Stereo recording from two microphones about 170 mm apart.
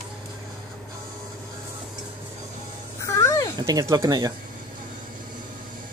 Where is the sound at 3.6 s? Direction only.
20° right (ahead or behind).